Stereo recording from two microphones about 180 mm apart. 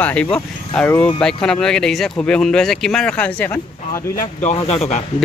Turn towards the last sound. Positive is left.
turn(degrees=35)  # may be behind; listen again after turning